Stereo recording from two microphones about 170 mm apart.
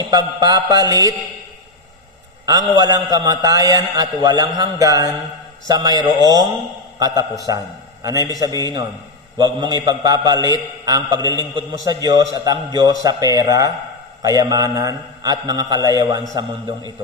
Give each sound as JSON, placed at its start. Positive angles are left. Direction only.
{"t": 0.1, "sound": "a man's voice", "side_deg": -20}
{"t": 2.5, "sound": "a man's voice", "side_deg": -20}